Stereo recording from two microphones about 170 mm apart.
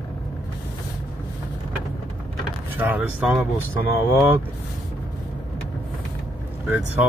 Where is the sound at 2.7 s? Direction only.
10° right (ahead or behind).